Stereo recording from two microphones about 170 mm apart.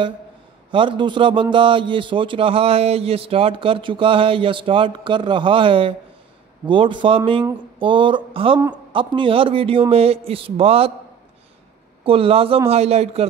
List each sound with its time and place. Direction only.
0.7 s a man's voice: 30° right (ahead or behind)
12.0 s a man's voice: 35° right (ahead or behind)